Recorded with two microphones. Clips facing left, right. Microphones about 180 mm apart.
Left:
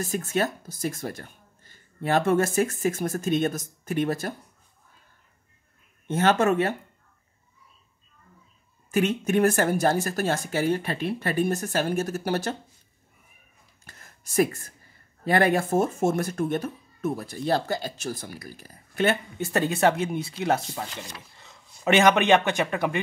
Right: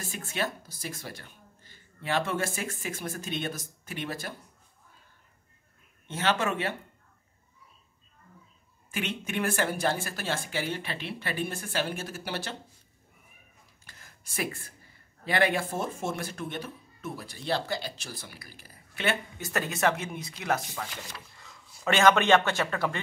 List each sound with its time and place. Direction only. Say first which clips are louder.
0.0 s speech: left 7 dB; 45° left (ahead or behind)
6.0 s speech: left 7 dB; 45° left (ahead or behind)
8.9 s speech: left 10 dB; 40° left (ahead or behind)
13.8 s a sound: left 4 dB; 45° left (ahead or behind)
15.2 s speech: left 5 dB; 45° left (ahead or behind)
19.3 s a man's voice: left 7 dB; 30° left (ahead or behind)